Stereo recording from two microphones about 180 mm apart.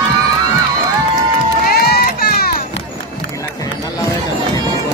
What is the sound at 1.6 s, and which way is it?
Run, 60° left (ahead or behind).